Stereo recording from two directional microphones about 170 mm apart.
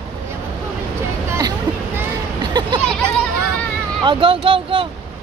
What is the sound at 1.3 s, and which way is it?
Hubbub, 20° right (ahead or behind).